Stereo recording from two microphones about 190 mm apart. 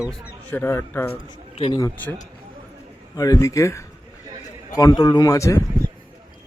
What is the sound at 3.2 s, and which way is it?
A man's voice, 20° left (ahead or behind).